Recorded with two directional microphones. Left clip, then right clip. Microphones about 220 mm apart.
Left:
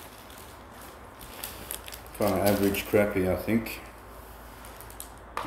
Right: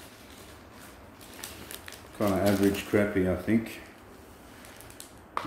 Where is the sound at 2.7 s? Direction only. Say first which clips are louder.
Left 2 dB; 25° right (ahead or behind).